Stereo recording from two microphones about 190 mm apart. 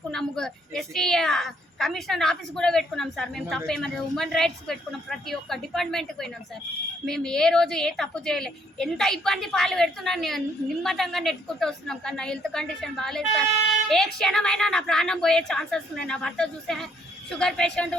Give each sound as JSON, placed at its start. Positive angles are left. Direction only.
{"t": 0.1, "sound": "a woman's voice", "side_deg": 0}